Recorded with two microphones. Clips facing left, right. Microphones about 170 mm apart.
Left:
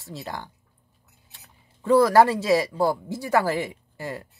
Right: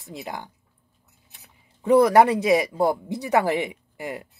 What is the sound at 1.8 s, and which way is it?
Speech, 20° right (ahead or behind).